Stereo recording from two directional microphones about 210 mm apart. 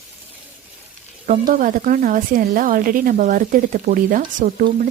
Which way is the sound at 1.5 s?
40° right (ahead or behind).